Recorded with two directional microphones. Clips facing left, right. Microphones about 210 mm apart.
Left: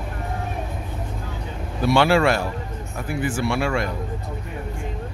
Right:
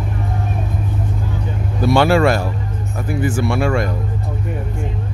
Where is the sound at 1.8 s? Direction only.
45° right (ahead or behind).